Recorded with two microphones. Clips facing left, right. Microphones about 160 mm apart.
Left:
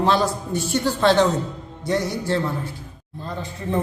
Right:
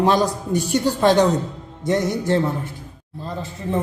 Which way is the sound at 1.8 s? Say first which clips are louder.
Right 3 dB; 20° right (ahead or behind).